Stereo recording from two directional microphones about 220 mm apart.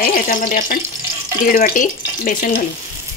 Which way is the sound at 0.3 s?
35° left (ahead or behind).